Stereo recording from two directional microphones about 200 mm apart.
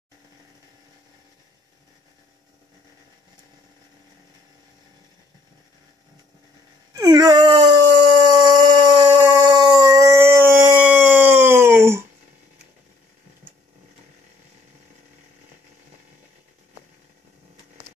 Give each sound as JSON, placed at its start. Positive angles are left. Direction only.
{"t": 7.0, "sound": "wail", "side_deg": -20}
{"t": 8.3, "sound": "howl", "side_deg": -20}